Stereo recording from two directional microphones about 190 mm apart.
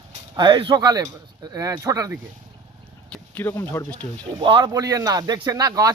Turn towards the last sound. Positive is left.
turn(degrees=-20)  # may be behind; listen again after turning